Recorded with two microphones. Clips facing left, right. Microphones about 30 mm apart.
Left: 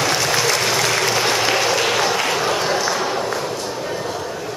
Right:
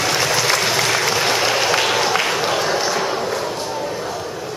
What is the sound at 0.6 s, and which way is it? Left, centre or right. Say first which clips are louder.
Applause: even; centre.